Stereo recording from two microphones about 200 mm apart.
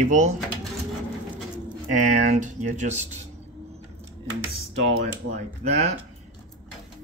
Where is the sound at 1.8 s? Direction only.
40° right (ahead or behind).